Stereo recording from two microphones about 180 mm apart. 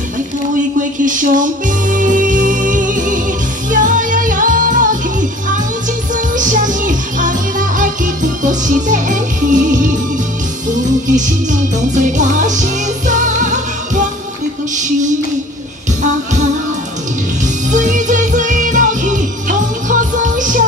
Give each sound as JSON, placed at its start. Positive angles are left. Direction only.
{"t": 0.7, "sound": "music", "side_deg": -45}
{"t": 6.3, "sound": "music", "side_deg": -45}
{"t": 14.8, "sound": "a sound", "side_deg": -45}
{"t": 17.6, "sound": "music", "side_deg": -45}